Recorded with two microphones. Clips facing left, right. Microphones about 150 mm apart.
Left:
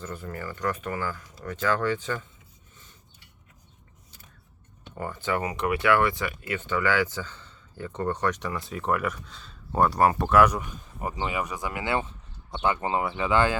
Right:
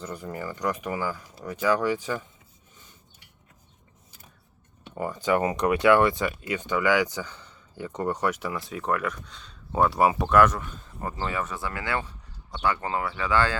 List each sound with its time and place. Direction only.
0.0 s speech: 15° right (ahead or behind)
4.9 s speech: 15° right (ahead or behind); by 13.6 s 20° left (ahead or behind)